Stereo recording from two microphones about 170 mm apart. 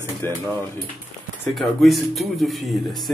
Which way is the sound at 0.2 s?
15° left (ahead or behind).